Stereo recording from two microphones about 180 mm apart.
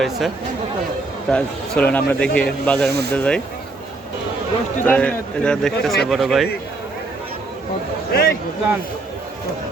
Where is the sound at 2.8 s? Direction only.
65° right (ahead or behind).